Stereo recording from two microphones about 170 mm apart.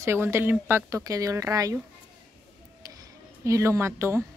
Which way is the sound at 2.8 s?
20° right (ahead or behind).